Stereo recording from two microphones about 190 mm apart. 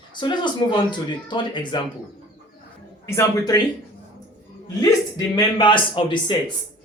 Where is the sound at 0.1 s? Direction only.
25° left (ahead or behind).